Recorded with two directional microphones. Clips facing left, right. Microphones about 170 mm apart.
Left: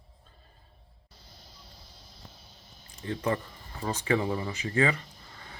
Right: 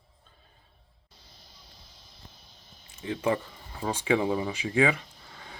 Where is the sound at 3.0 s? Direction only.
10° right (ahead or behind).